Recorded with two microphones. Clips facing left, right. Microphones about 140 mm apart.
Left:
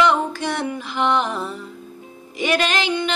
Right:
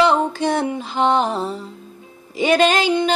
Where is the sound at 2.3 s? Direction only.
30° right (ahead or behind).